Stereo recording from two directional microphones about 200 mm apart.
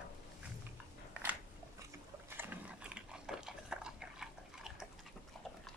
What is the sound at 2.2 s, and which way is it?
Gears, 10° right (ahead or behind).